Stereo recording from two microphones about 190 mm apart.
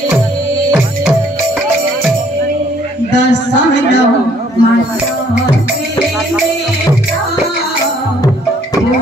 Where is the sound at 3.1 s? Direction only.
65° left (ahead or behind).